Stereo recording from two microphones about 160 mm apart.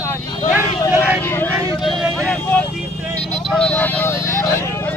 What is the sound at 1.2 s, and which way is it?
Vehicle, 15° left (ahead or behind).